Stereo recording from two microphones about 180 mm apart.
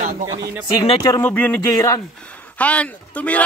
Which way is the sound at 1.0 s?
15° left (ahead or behind).